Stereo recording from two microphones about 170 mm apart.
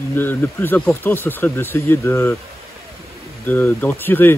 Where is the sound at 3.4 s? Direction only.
15° left (ahead or behind).